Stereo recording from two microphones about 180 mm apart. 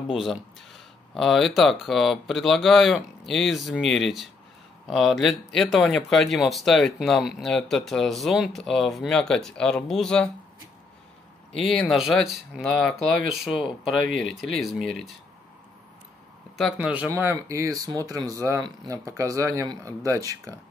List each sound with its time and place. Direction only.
0.1 s speech: centre (ahead or behind)
11.5 s speech: centre (ahead or behind)
14.1 s speech: centre (ahead or behind)
16.5 s speech: 5° right (ahead or behind)